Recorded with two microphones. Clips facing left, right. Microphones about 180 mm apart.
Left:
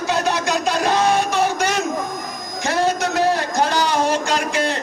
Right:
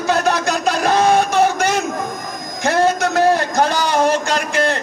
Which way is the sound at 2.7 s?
50° right (ahead or behind).